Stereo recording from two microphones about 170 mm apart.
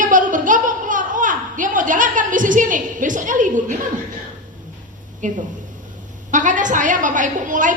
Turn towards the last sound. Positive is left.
turn(degrees=-50)  # may be behind; listen again after turning